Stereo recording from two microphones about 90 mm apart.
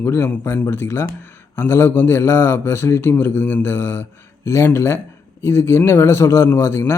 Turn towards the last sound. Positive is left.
turn(degrees=30)  # may be behind; listen again after turning